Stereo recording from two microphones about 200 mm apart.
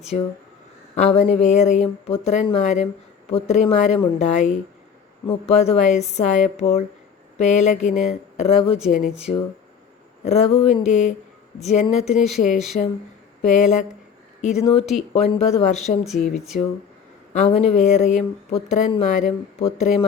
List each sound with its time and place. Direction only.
0.1 s speech: 40° left (ahead or behind)
15.1 s speech: 30° left (ahead or behind)